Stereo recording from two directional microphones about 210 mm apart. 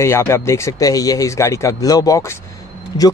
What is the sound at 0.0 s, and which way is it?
Speech, 10° left (ahead or behind).